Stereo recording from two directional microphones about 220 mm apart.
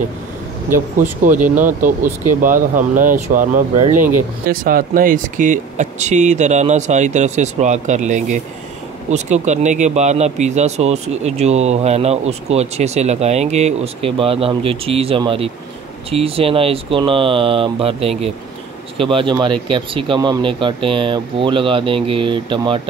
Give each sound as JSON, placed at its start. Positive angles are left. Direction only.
{"t": 0.7, "sound": "speech", "side_deg": -40}